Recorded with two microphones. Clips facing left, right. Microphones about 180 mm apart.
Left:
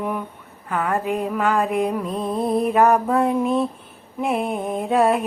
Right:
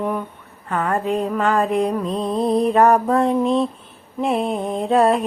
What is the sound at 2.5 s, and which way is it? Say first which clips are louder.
Mantra: right 2 dB; 5° left (ahead or behind).